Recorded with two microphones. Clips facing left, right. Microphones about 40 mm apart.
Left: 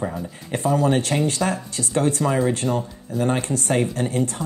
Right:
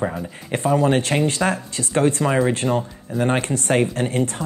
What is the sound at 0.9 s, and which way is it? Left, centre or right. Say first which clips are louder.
Speech: right 2 dB; right.